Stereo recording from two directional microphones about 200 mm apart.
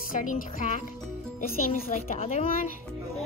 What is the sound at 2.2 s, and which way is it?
Speech, 35° left (ahead or behind).